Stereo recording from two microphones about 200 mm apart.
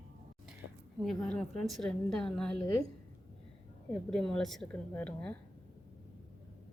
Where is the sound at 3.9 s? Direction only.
5° left (ahead or behind).